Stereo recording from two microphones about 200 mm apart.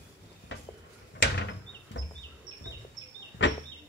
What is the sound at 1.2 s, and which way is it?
Door, 65° left (ahead or behind).